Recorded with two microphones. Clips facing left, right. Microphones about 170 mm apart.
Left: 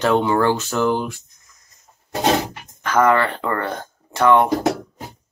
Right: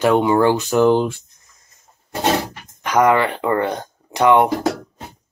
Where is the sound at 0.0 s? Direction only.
15° right (ahead or behind).